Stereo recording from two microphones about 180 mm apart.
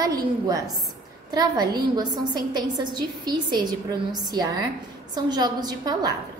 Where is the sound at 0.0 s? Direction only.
20° right (ahead or behind).